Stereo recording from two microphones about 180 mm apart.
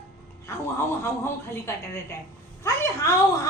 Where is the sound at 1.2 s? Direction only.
15° left (ahead or behind).